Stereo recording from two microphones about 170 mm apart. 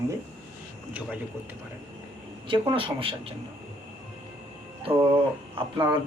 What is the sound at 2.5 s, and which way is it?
Speech, 30° right (ahead or behind).